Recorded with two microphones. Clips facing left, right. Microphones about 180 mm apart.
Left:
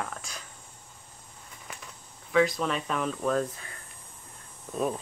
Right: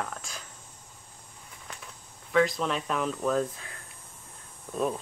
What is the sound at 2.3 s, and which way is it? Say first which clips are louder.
Speech: even; centre (ahead or behind).